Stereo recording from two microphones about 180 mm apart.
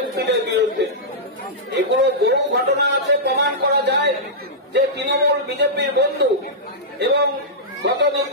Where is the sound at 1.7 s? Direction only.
70° right (ahead or behind).